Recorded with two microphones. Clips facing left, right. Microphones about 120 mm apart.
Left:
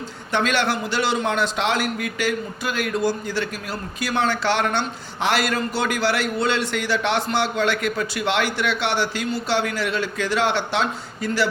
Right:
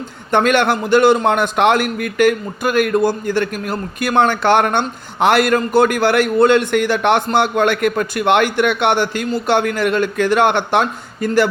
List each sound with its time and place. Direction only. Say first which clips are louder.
0.3 s a man's voice: right 7 dB; 50° right (ahead or behind)